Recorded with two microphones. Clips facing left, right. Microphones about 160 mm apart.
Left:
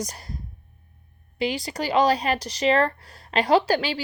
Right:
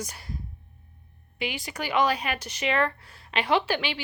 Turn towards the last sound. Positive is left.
turn(degrees=40)  # may be behind; listen again after turning